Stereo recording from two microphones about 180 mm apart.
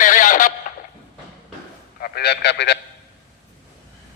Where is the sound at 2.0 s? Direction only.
60° left (ahead or behind).